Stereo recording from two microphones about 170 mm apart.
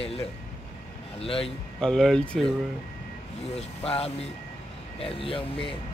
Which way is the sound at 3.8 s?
35° left (ahead or behind).